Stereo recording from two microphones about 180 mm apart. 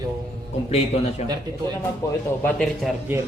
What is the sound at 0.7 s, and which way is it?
Speech, 35° left (ahead or behind).